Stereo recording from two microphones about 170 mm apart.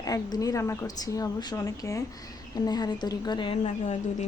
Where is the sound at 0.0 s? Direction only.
20° left (ahead or behind).